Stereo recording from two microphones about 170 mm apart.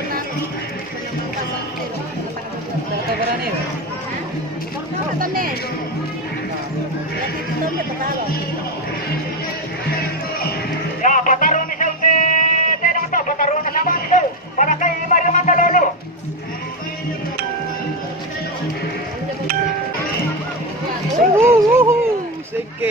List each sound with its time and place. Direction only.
11.0 s music: 50° left (ahead or behind)
21.4 s music: 15° right (ahead or behind)